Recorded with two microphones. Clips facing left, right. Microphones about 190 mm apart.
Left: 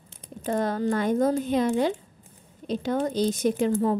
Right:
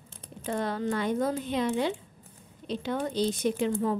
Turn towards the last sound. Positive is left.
turn(degrees=40)  # may be behind; listen again after turning